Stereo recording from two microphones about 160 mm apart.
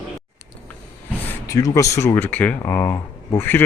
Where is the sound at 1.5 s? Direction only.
20° left (ahead or behind).